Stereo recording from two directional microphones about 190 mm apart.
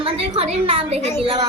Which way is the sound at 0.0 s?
30° right (ahead or behind).